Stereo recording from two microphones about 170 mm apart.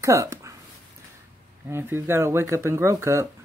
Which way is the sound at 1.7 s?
15° right (ahead or behind).